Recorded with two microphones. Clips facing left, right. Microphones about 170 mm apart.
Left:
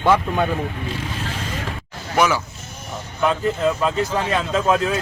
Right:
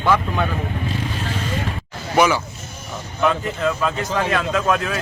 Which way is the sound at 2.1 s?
Centre (ahead or behind).